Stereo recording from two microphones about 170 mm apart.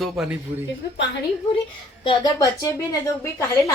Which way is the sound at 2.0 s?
25° left (ahead or behind).